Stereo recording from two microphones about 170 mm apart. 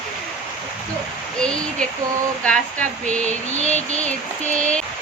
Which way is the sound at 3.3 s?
45° right (ahead or behind).